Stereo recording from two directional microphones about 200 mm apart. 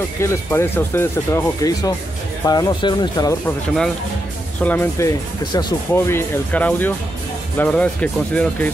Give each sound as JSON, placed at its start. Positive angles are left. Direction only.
{"t": 0.2, "sound": "speech", "side_deg": 15}
{"t": 4.6, "sound": "speech", "side_deg": 10}